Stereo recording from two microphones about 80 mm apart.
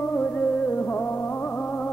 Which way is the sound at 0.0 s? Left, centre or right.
Centre.